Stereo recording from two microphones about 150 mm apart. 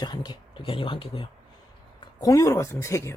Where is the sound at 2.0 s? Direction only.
25° left (ahead or behind).